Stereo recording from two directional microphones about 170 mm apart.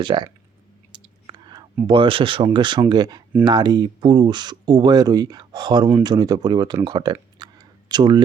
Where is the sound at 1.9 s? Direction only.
30° right (ahead or behind).